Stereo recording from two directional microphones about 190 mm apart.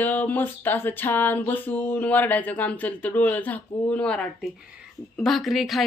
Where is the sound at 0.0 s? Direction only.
10° left (ahead or behind).